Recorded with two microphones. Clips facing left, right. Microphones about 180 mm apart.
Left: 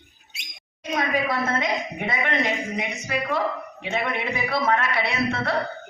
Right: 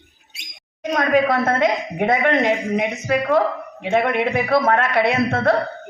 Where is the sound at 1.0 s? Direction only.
55° right (ahead or behind).